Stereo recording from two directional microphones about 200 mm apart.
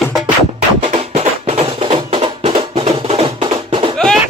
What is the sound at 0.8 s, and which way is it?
Music, 30° right (ahead or behind).